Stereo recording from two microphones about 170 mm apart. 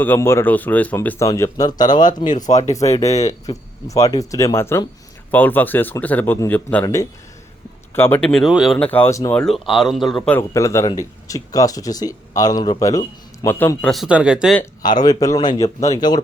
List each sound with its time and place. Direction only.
0.0 s a man's voice: 15° left (ahead or behind)
2.5 s speech: 40° left (ahead or behind)
2.9 s a man's voice: 20° left (ahead or behind); by 8.9 s centre (ahead or behind)
8.9 s a man's voice: 15° left (ahead or behind)
9.4 s a man's voice: centre (ahead or behind)
13.9 s speech: 5° right (ahead or behind)
14.8 s a man's voice: 25° left (ahead or behind)